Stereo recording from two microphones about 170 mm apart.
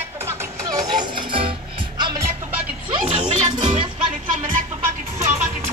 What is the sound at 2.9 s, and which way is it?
Music, 30° right (ahead or behind).